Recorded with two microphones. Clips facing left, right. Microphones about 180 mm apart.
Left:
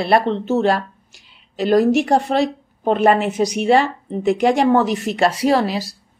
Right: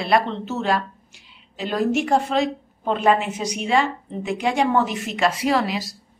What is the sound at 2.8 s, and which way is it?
A woman's voice, 50° left (ahead or behind).